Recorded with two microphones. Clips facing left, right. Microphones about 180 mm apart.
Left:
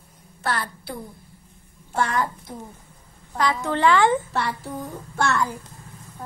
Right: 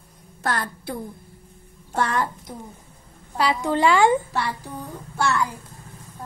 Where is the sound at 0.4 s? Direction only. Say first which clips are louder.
Right 1 dB; 45° right (ahead or behind).